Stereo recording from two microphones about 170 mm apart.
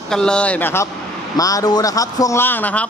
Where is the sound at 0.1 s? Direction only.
5° left (ahead or behind).